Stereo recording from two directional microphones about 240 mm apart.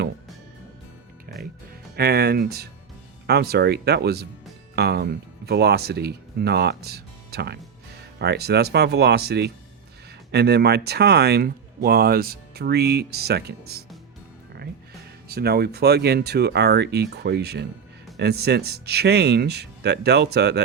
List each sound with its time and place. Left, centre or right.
1.3 s music: right
2.0 s speech: right
15.3 s speech: right